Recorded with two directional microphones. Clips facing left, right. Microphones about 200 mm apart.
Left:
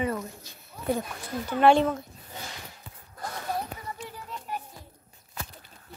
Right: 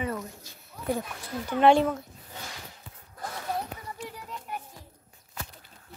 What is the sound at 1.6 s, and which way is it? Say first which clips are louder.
Speech: even; 10° right (ahead or behind).